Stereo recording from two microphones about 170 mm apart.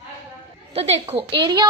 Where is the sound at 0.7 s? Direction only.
35° right (ahead or behind).